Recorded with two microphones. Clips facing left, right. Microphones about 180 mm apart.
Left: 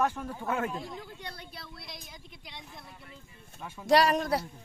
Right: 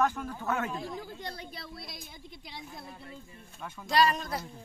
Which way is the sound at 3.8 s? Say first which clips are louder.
Left 3 dB; 70° left (ahead or behind).